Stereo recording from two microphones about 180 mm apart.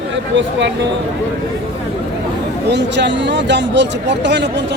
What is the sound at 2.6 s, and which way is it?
Speech, 75° right (ahead or behind).